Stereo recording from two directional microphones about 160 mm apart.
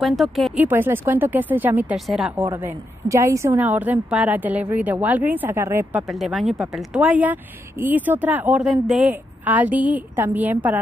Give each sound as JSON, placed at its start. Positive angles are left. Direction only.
{"t": 0.0, "sound": "speech", "side_deg": 0}
{"t": 0.7, "sound": "a woman's voice", "side_deg": -15}
{"t": 2.5, "sound": "a woman's voice", "side_deg": -15}
{"t": 6.1, "sound": "a woman's voice", "side_deg": 0}